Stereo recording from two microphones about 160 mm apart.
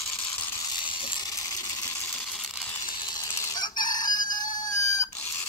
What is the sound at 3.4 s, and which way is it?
Chicken, 25° left (ahead or behind).